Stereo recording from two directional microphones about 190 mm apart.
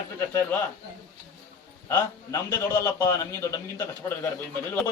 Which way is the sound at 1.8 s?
15° left (ahead or behind).